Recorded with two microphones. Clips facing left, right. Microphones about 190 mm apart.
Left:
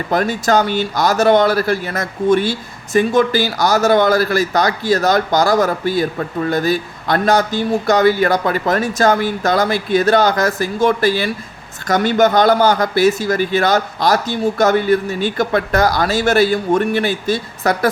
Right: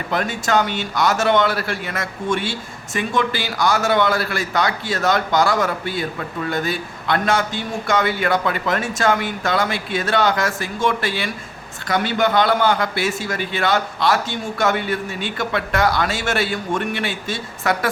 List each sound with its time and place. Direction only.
0.1 s speech: 40° left (ahead or behind)